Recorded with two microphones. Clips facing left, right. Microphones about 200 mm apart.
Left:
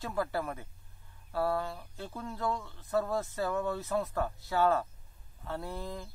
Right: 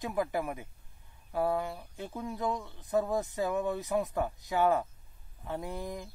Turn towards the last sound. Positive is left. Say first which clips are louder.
# right 2 dB
turn(degrees=-15)  # may be behind; listen again after turning